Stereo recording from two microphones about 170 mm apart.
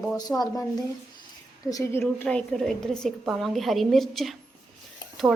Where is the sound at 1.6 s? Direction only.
20° left (ahead or behind).